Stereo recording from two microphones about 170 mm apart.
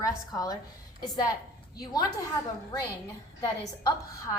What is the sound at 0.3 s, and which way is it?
Speech, 20° left (ahead or behind).